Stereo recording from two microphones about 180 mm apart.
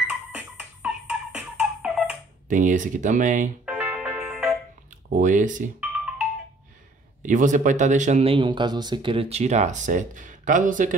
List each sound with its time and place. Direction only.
0.3 s music: 10° right (ahead or behind)
2.4 s speech: 45° right (ahead or behind)
3.6 s music: 10° right (ahead or behind)
5.1 s speech: 45° right (ahead or behind)
5.8 s music: 5° right (ahead or behind)
7.2 s speech: 45° right (ahead or behind)